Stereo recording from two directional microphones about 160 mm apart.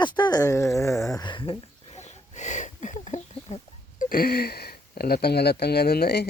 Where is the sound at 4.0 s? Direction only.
65° left (ahead or behind).